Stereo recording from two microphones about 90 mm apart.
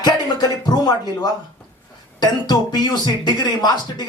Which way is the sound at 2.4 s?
50° left (ahead or behind).